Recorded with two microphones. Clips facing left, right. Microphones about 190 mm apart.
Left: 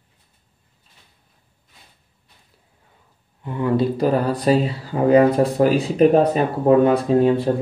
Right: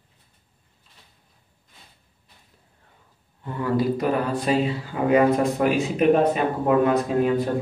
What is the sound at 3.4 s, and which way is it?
Speech, 20° left (ahead or behind).